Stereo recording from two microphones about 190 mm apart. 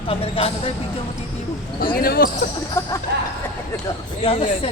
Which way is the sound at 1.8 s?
50° left (ahead or behind).